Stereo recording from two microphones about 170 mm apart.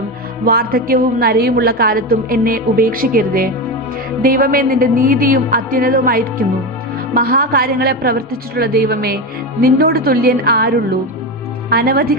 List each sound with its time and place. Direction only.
0.5 s a woman's voice: 60° right (ahead or behind)